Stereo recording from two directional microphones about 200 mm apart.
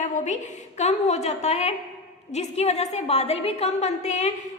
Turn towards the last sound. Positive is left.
turn(degrees=35)  # may be behind; listen again after turning